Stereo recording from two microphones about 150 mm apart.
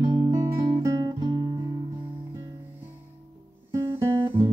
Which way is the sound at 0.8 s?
25° right (ahead or behind).